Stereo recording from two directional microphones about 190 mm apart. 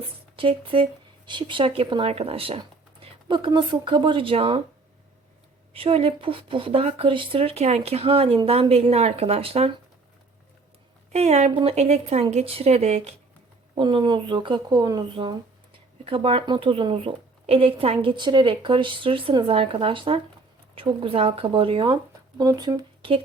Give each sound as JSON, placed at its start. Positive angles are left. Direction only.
{"t": 0.3, "sound": "speech", "side_deg": -30}
{"t": 5.7, "sound": "speech", "side_deg": -30}
{"t": 11.1, "sound": "speech", "side_deg": -35}
{"t": 13.7, "sound": "a woman's voice", "side_deg": -25}